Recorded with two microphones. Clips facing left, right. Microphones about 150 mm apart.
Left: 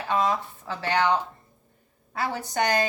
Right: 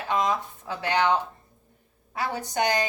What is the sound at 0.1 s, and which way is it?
Speech, 15° right (ahead or behind).